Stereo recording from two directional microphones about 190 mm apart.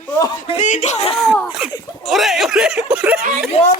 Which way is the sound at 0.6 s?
40° left (ahead or behind).